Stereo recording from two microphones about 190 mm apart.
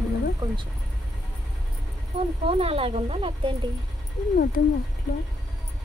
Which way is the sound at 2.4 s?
30° right (ahead or behind).